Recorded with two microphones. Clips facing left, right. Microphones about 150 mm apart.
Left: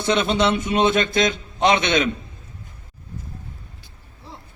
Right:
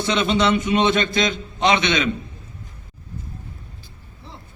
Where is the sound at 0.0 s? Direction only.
50° left (ahead or behind).